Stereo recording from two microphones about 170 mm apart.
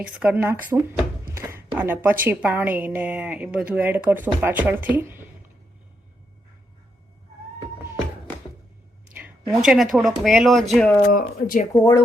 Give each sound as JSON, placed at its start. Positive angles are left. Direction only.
{"t": 0.0, "sound": "a woman's voice", "side_deg": -10}
{"t": 9.6, "sound": "speech", "side_deg": -5}
{"t": 11.1, "sound": "speech", "side_deg": 55}
{"t": 11.7, "sound": "speech", "side_deg": 15}